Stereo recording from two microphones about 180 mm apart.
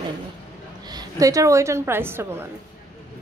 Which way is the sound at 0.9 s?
20° right (ahead or behind).